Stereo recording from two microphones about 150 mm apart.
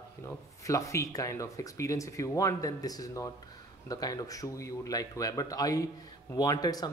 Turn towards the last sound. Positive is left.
turn(degrees=25)  # may be behind; listen again after turning